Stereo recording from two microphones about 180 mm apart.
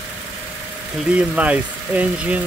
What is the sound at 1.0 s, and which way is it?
Speech, 5° right (ahead or behind).